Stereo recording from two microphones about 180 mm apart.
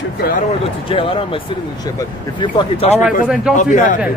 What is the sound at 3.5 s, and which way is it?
Speech, 45° left (ahead or behind).